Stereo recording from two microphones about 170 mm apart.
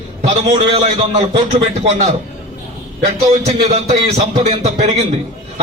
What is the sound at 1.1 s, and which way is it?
Speech, 35° right (ahead or behind).